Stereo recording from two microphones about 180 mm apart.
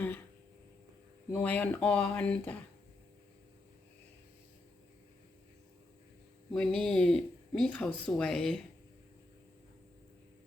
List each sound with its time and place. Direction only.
1.3 s speech: 10° left (ahead or behind)
6.5 s speech: 5° left (ahead or behind)